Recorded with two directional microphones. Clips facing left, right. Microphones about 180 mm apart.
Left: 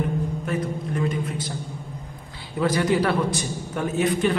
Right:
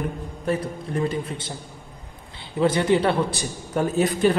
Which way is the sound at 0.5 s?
30° right (ahead or behind).